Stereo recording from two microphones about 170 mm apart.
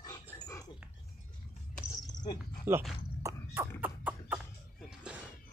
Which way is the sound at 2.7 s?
10° right (ahead or behind).